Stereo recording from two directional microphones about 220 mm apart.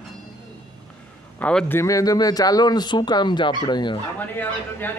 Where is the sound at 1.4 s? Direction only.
5° left (ahead or behind); by 4.0 s 20° left (ahead or behind).